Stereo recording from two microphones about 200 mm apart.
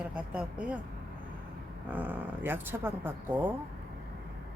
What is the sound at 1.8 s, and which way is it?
Speech, 10° right (ahead or behind).